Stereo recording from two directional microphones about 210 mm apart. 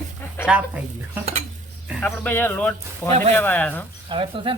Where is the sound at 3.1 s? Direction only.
30° right (ahead or behind).